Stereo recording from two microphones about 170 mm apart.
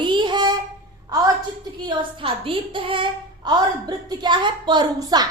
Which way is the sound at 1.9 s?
30° right (ahead or behind).